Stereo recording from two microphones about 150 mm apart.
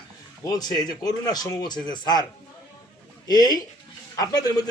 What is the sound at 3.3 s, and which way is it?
Speech, 25° left (ahead or behind).